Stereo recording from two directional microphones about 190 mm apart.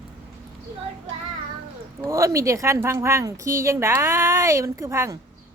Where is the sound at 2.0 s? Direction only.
15° right (ahead or behind).